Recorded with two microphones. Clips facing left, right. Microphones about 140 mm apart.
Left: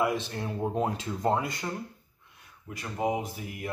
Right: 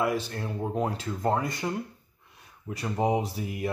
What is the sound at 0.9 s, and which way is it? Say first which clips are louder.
Speech: even; 5° left (ahead or behind).